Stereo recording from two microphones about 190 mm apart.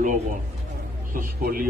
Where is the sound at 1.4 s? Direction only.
50° right (ahead or behind).